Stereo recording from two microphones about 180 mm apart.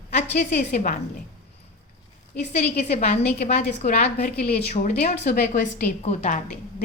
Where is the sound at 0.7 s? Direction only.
45° left (ahead or behind).